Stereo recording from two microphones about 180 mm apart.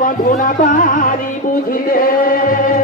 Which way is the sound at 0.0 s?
50° left (ahead or behind).